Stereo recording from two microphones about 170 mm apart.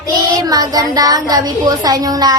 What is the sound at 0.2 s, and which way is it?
A woman's voice, 20° right (ahead or behind).